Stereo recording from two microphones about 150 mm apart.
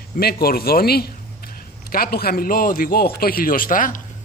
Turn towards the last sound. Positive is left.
turn(degrees=65)  # may be behind; listen again after turning